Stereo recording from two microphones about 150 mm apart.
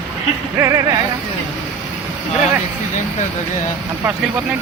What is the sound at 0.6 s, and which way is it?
Music, 20° right (ahead or behind).